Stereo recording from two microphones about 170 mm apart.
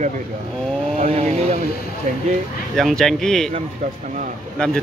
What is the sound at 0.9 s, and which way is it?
Speech, 40° right (ahead or behind).